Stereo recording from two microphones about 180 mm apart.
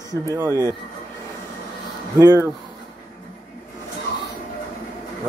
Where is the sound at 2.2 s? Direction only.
20° right (ahead or behind).